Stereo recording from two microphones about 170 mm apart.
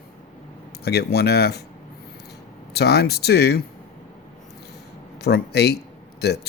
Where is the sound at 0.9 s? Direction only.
70° left (ahead or behind).